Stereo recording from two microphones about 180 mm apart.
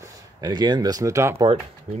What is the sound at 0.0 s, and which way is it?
Speech, 20° right (ahead or behind).